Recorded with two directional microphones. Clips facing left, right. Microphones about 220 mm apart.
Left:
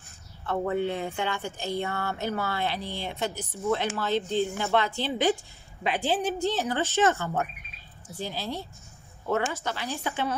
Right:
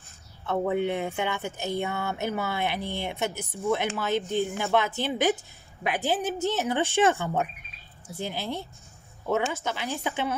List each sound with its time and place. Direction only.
0.5 s a woman's voice: 15° right (ahead or behind)